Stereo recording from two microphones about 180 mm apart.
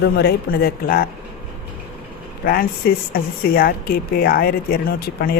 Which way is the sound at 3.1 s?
55° left (ahead or behind).